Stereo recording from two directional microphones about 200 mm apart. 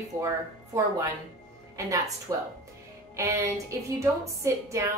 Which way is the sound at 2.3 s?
15° right (ahead or behind).